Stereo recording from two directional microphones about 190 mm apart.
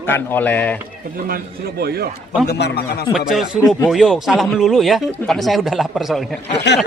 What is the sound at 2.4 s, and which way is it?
Speech, 60° left (ahead or behind).